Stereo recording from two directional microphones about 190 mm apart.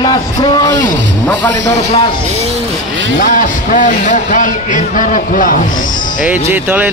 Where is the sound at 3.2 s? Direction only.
45° left (ahead or behind).